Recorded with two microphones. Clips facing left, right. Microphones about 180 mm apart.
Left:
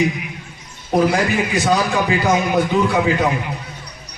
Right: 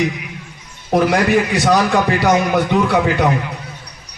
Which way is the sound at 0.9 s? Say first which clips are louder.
Right 2 dB; 70° right (ahead or behind).